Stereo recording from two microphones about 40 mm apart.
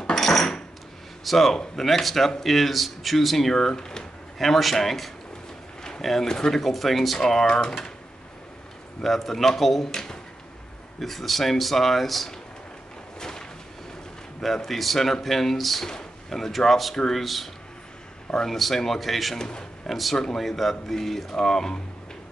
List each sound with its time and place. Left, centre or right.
0.0 s dishes: centre
1.2 s speech: centre
4.4 s speech: centre
5.8 s a sound: centre
6.0 s speech: centre
6.6 s speech: centre
7.2 s speech: centre
9.0 s speech: centre
13.2 s a sound: centre
14.4 s speech: centre
19.3 s speech: centre
19.9 s speech: centre